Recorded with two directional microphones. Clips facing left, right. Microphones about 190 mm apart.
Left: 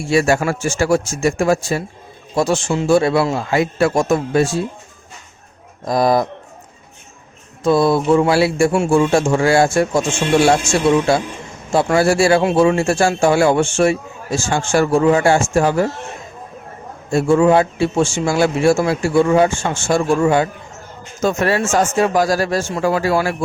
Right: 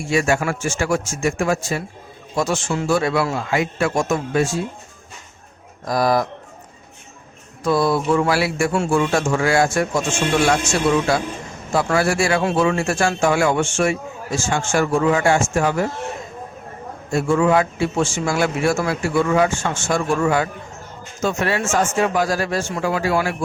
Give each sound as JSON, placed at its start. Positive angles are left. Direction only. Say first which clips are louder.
{"t": 0.0, "sound": "a man's voice", "louder": "left 4 dB", "side_deg": 35}
{"t": 5.8, "sound": "a man's voice", "louder": "left 3 dB", "side_deg": 25}
{"t": 7.6, "sound": "a man's voice", "louder": "left 4 dB", "side_deg": 25}
{"t": 11.1, "sound": "a man's voice", "louder": "left 3 dB", "side_deg": 25}
{"t": 17.1, "sound": "a man's voice", "louder": "left 4 dB", "side_deg": 30}
{"t": 21.2, "sound": "a man's voice", "louder": "left 4 dB", "side_deg": 40}